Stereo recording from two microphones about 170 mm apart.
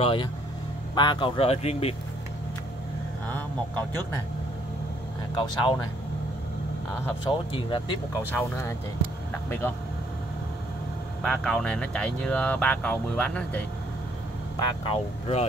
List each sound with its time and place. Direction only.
0.0 s speech: 30° left (ahead or behind)
5.3 s speech: 25° left (ahead or behind)
7.2 s speech: 30° left (ahead or behind)
8.3 s speech: 15° left (ahead or behind)
11.2 s speech: 5° left (ahead or behind)
14.6 s speech: 35° left (ahead or behind)